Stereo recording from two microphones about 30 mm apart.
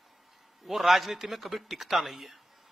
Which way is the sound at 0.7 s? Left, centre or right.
Centre.